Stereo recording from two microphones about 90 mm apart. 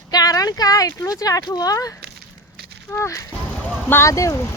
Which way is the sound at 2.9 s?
25° left (ahead or behind).